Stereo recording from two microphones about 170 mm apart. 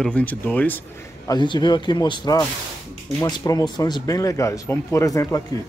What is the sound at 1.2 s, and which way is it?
Speech, 25° left (ahead or behind).